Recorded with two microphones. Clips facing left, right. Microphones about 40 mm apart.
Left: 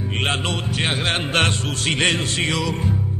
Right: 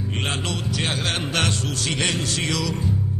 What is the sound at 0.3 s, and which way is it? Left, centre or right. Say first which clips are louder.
Music: left 3 dB; left.